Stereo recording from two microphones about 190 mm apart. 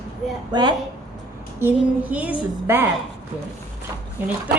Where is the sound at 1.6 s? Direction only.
10° right (ahead or behind).